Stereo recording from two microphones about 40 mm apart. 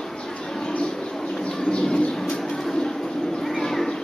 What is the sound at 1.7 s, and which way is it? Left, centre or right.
Bird, left.